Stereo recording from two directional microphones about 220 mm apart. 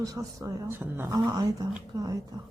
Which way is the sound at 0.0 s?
15° right (ahead or behind).